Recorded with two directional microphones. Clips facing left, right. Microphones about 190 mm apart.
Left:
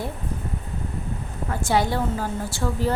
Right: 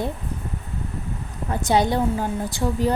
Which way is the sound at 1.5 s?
20° right (ahead or behind).